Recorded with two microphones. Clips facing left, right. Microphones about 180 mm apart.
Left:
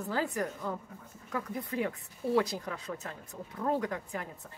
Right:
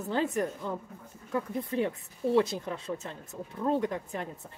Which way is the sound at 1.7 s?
25° right (ahead or behind).